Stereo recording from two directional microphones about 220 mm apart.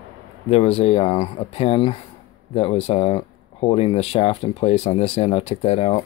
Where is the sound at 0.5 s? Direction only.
25° left (ahead or behind).